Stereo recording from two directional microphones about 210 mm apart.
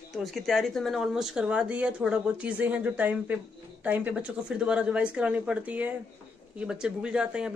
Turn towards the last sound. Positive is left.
turn(degrees=-5)  # may be behind; listen again after turning